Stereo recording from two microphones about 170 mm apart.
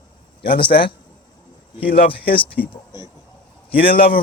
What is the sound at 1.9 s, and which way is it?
Speech, 65° left (ahead or behind).